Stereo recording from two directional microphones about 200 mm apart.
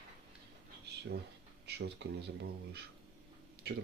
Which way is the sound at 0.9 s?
55° right (ahead or behind).